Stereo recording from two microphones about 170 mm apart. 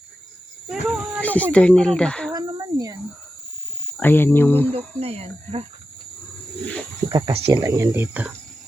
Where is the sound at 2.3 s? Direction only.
20° right (ahead or behind).